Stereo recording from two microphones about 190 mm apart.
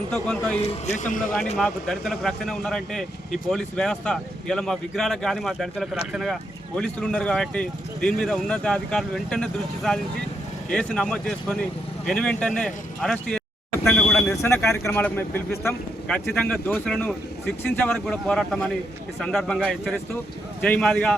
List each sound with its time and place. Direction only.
0.1 s speech: 5° left (ahead or behind)
0.9 s a man's voice: 40° left (ahead or behind)
1.5 s speech: centre (ahead or behind)